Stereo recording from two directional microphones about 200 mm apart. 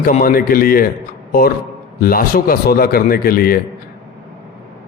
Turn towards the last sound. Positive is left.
turn(degrees=45)  # may be behind; listen again after turning